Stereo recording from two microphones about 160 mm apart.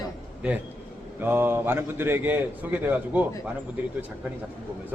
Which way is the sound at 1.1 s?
15° right (ahead or behind).